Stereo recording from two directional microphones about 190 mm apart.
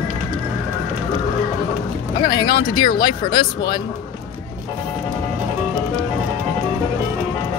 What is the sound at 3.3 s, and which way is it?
Speech, 20° left (ahead or behind).